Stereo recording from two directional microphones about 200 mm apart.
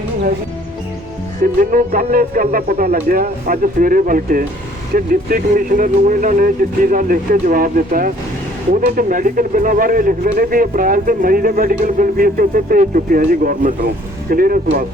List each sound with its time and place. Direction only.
1.5 s speech: 45° right (ahead or behind)